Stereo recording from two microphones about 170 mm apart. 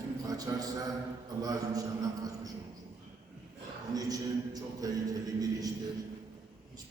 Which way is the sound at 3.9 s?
20° right (ahead or behind).